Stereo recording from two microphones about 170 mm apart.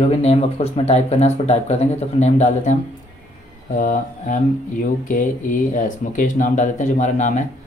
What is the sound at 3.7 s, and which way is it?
Speech, 50° left (ahead or behind).